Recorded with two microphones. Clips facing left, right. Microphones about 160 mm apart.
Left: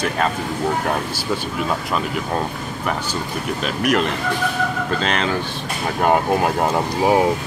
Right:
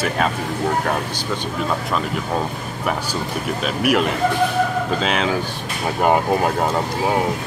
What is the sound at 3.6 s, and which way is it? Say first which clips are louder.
Speech: right 1 dB; 5° right (ahead or behind).